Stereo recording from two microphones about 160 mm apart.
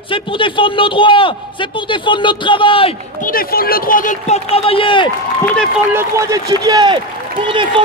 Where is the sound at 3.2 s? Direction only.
60° left (ahead or behind).